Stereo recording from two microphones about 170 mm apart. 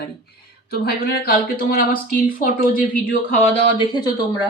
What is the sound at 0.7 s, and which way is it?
Speech, 60° left (ahead or behind).